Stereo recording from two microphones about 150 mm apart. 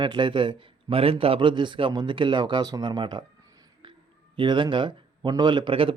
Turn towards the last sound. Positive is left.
turn(degrees=-35)  # may be behind; listen again after turning